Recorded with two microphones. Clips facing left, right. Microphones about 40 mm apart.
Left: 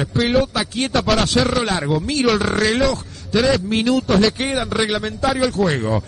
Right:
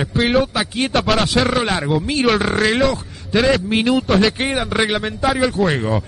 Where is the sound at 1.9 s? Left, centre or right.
Right.